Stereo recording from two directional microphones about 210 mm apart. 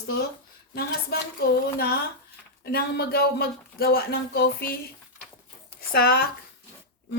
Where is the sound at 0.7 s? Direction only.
50° left (ahead or behind).